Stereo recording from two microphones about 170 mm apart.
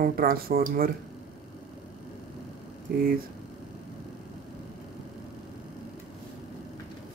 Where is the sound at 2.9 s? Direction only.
70° right (ahead or behind).